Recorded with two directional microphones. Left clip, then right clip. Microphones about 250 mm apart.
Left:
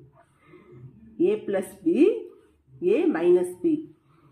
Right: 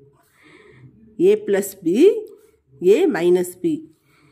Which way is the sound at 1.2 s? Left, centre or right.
Right.